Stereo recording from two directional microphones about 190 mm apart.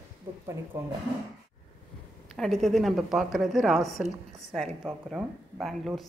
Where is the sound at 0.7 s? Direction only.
10° right (ahead or behind).